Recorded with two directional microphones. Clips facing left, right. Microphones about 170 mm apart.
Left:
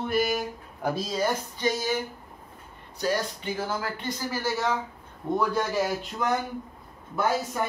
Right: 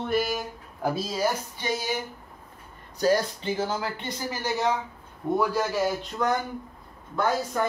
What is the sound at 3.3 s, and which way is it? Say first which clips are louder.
Speech: right 2 dB; 25° right (ahead or behind).